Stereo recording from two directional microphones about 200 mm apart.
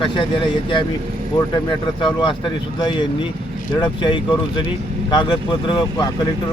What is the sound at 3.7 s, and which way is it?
Speech, 20° left (ahead or behind).